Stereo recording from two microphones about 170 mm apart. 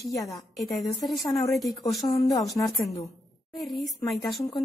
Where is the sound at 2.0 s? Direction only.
20° left (ahead or behind).